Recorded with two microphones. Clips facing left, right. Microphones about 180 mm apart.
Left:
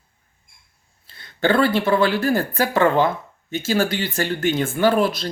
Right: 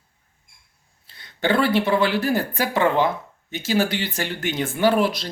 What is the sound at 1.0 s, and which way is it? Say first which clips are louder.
Speech: left 3 dB; 15° right (ahead or behind).